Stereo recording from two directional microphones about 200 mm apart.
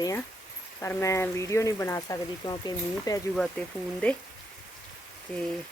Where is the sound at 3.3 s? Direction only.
5° left (ahead or behind).